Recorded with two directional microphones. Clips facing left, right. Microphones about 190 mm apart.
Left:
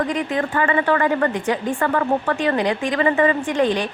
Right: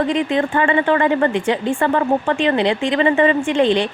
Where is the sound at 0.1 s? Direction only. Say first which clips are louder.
Right 4 dB; 25° right (ahead or behind).